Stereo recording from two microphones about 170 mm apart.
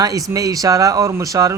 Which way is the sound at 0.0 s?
20° right (ahead or behind).